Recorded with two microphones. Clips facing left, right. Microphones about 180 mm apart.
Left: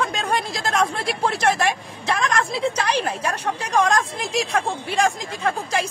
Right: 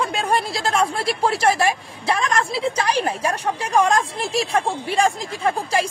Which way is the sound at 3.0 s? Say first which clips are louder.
Right 2 dB; 35° right (ahead or behind).